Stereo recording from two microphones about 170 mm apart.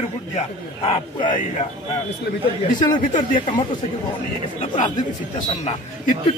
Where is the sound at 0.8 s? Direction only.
25° left (ahead or behind).